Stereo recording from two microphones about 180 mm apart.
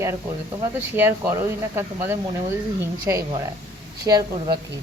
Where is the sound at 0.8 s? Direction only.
10° right (ahead or behind).